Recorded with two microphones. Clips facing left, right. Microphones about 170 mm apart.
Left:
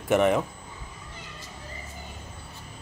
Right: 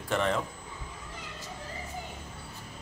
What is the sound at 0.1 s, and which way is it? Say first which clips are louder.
Speech: left 7 dB; 15° left (ahead or behind).